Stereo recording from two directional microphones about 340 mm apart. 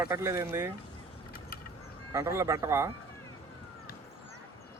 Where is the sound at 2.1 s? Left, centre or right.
Centre.